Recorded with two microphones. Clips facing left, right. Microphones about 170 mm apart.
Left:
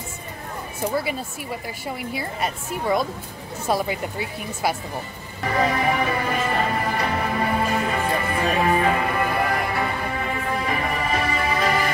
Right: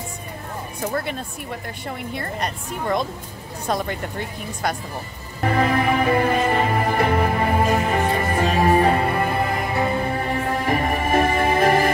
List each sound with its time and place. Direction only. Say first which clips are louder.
0.8 s a woman's voice: left 1 dB; 5° left (ahead or behind)
5.4 s music: right 2 dB; 55° right (ahead or behind)
6.3 s music: right 3 dB; 40° right (ahead or behind)
8.5 s music: right 3 dB; 40° right (ahead or behind); by 9.8 s 25° right (ahead or behind)
10.1 s music: right 3 dB; 40° right (ahead or behind)